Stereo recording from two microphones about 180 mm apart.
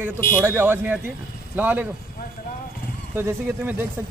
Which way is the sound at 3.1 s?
10° right (ahead or behind).